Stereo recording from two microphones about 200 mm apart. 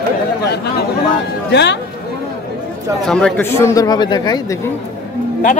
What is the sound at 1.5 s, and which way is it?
Speech, 60° left (ahead or behind).